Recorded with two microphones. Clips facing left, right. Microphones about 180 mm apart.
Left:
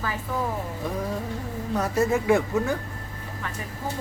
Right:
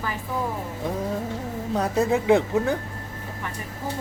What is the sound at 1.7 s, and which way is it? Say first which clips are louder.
Speech: right 1 dB; 15° right (ahead or behind).